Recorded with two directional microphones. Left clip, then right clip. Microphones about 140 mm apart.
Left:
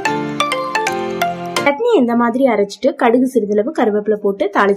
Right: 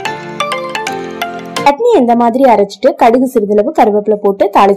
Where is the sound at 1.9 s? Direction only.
20° right (ahead or behind).